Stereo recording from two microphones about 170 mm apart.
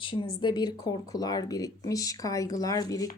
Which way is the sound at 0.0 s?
30° left (ahead or behind).